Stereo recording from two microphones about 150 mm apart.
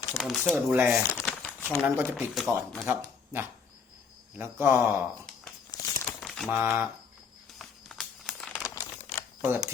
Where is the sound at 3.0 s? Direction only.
15° right (ahead or behind).